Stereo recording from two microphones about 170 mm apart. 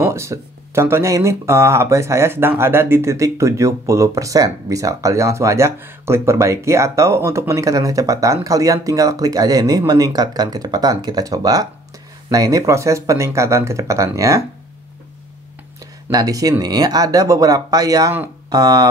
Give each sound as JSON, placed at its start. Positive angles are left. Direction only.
{"t": 0.0, "sound": "speech", "side_deg": -15}
{"t": 16.1, "sound": "speech", "side_deg": -20}